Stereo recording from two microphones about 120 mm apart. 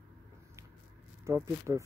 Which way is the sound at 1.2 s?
25° right (ahead or behind).